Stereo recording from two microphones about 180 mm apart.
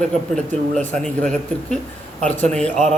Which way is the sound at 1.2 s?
5° left (ahead or behind).